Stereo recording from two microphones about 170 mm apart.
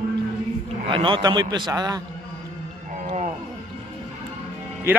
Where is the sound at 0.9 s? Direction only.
30° right (ahead or behind).